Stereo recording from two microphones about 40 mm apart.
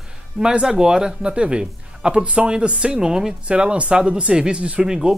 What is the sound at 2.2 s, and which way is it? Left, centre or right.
Speech, right.